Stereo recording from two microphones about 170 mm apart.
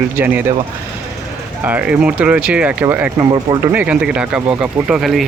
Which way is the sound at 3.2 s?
25° right (ahead or behind).